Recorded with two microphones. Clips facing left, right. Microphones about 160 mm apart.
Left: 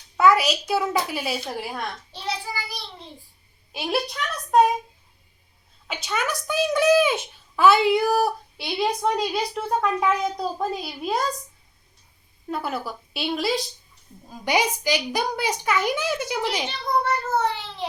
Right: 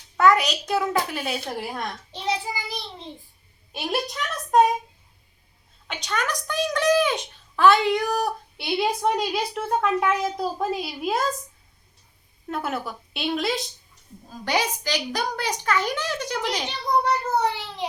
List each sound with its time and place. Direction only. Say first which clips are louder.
0.2 s a child's voice: left 1 dB; 5° left (ahead or behind)
2.1 s child singing: right 4 dB; 20° right (ahead or behind)
5.9 s a woman's voice: left 1 dB; 5° left (ahead or behind)
12.5 s a child's voice: even; centre (ahead or behind)
14.4 s a woman's voice: left 3 dB; 10° left (ahead or behind)
16.6 s a child's voice: right 1 dB; 15° right (ahead or behind)